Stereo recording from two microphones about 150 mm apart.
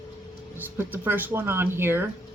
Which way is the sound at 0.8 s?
15° right (ahead or behind).